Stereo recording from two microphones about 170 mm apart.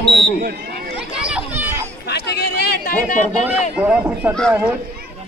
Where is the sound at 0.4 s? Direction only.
65° right (ahead or behind).